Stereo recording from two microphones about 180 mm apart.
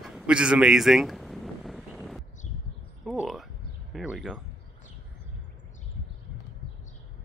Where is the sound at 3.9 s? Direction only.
Centre (ahead or behind).